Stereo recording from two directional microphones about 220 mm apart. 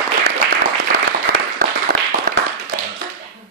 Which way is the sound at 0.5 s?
45° right (ahead or behind).